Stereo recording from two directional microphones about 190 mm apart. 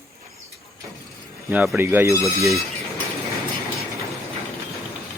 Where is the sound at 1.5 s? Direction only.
10° right (ahead or behind).